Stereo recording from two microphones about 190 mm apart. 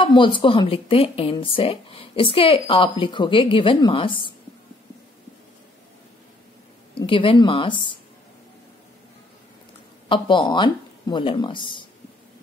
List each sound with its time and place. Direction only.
0.0 s speech: 25° left (ahead or behind)
7.0 s speech: 25° left (ahead or behind)
10.0 s speech: 25° left (ahead or behind)